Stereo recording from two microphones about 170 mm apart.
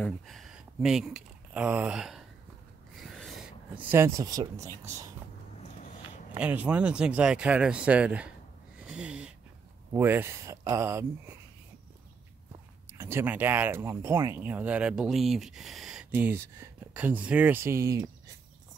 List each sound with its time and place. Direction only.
0.0 s speech: centre (ahead or behind)
3.0 s a sound: centre (ahead or behind); by 4.6 s 20° right (ahead or behind)
4.8 s speech: 20° right (ahead or behind)
6.3 s speech: 10° right (ahead or behind)
8.7 s a sound: 5° right (ahead or behind)
9.9 s speech: 10° right (ahead or behind)
12.9 s speech: 15° right (ahead or behind)